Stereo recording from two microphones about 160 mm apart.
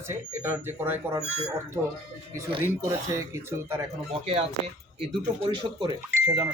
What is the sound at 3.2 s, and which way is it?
Speech, 15° right (ahead or behind).